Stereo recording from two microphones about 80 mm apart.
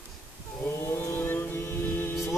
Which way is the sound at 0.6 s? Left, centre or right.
Left.